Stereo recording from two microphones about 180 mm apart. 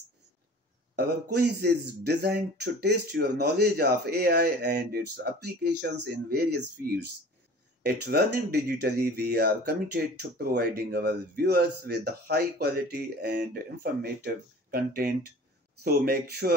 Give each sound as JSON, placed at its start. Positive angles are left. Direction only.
{"t": 0.9, "sound": "a man's voice", "side_deg": -65}